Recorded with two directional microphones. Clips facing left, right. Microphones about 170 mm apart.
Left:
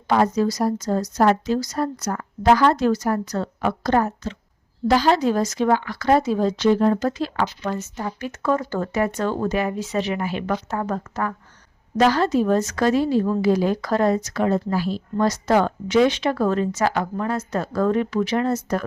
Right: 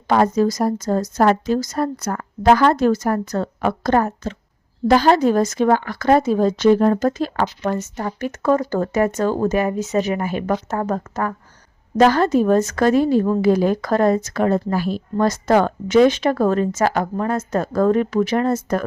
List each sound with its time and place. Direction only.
0.1 s a woman's voice: 50° right (ahead or behind)